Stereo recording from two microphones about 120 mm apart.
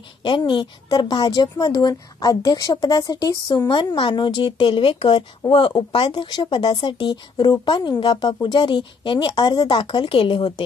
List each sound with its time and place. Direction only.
0.2 s a woman's voice: 40° left (ahead or behind)